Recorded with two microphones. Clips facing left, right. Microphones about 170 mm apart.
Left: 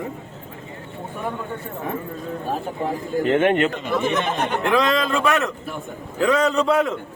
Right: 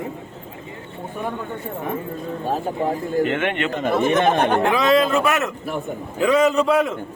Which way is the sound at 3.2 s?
35° left (ahead or behind).